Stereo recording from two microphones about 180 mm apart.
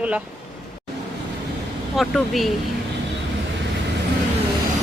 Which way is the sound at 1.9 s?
Centre (ahead or behind).